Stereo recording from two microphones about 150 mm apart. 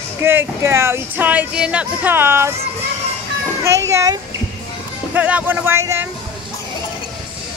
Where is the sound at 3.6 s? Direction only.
20° right (ahead or behind).